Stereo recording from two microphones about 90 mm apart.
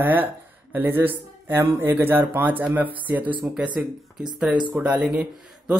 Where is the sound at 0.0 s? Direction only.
20° right (ahead or behind).